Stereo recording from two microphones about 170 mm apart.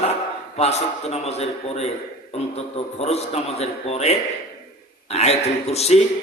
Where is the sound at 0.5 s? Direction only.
40° left (ahead or behind).